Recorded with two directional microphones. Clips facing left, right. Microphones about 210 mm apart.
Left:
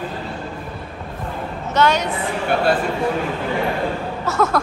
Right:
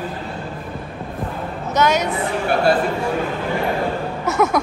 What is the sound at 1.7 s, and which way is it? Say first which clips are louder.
Speech: even; 10° right (ahead or behind).